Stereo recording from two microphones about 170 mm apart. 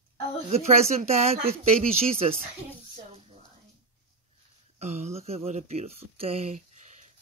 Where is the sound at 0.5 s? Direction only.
40° right (ahead or behind).